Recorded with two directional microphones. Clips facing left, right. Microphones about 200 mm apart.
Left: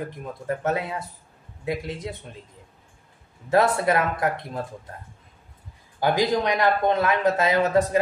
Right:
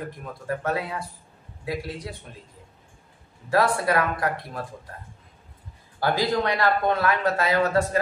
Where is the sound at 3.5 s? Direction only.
20° left (ahead or behind).